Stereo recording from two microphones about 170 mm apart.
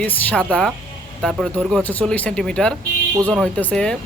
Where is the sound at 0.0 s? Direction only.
10° left (ahead or behind).